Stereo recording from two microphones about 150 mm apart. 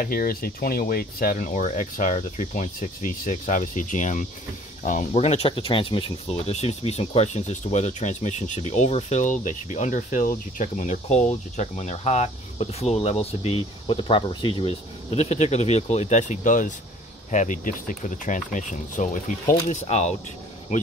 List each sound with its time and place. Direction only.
0.0 s speech: 70° left (ahead or behind); by 20.2 s 50° left (ahead or behind)